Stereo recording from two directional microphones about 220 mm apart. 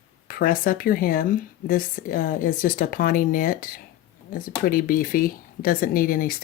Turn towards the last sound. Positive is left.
turn(degrees=40)  # may be behind; listen again after turning